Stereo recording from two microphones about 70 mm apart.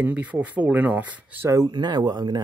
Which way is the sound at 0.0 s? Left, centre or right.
Right.